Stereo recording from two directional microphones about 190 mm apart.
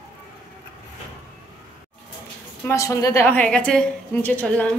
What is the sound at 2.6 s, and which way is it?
A woman's voice, 15° left (ahead or behind).